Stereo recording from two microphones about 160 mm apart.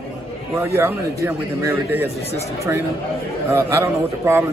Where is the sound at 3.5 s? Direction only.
15° right (ahead or behind).